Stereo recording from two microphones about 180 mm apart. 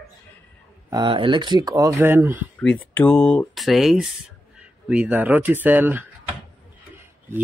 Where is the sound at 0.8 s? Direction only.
25° right (ahead or behind).